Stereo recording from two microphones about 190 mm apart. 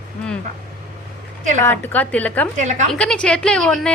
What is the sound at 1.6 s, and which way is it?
Speech, 10° left (ahead or behind).